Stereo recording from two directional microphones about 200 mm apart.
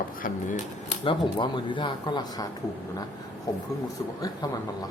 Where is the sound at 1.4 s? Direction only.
20° left (ahead or behind).